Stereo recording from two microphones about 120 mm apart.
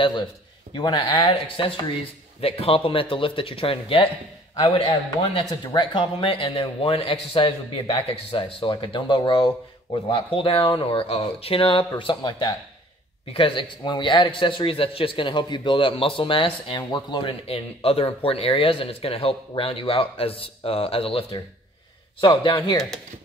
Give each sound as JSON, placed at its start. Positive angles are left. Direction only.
{"t": 0.7, "sound": "a man's voice", "side_deg": 40}
{"t": 22.2, "sound": "speech", "side_deg": 40}